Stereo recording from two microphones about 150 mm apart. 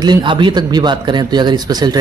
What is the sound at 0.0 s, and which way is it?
A man's voice, 30° right (ahead or behind).